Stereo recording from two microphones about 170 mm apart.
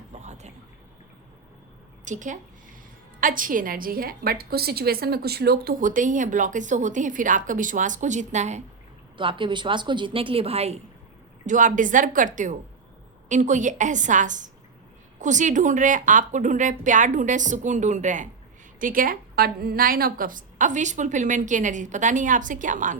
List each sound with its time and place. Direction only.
0.1 s a sound: 40° right (ahead or behind)
2.0 s a woman's voice: 50° right (ahead or behind)
9.1 s a woman's voice: 30° right (ahead or behind)
11.4 s a woman's voice: 50° right (ahead or behind)